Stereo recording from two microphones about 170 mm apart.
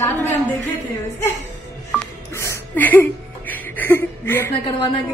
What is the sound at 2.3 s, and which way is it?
Music, 15° left (ahead or behind).